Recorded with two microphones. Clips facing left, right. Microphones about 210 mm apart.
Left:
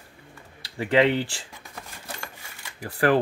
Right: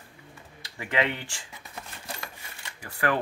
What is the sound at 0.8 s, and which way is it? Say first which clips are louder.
Speech: left 8 dB; 35° left (ahead or behind).